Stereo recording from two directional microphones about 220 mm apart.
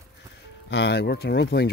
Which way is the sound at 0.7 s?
50° left (ahead or behind).